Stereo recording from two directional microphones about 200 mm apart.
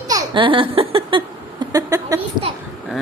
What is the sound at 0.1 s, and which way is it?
Laughter, 25° right (ahead or behind).